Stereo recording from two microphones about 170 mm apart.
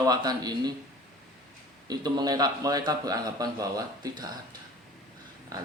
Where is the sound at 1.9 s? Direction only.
25° right (ahead or behind).